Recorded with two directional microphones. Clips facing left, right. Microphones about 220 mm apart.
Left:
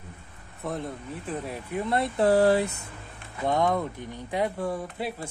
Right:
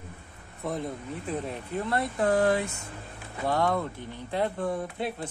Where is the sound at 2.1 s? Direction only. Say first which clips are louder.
Left 4 dB; 35° left (ahead or behind).